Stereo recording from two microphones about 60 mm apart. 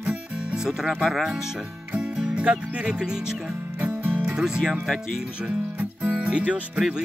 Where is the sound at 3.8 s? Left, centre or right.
Right.